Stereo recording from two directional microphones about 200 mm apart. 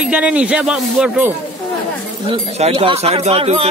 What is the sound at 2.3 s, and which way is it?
Speech, 30° right (ahead or behind).